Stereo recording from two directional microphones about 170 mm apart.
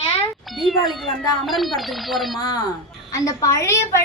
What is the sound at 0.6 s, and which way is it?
Speech, centre (ahead or behind).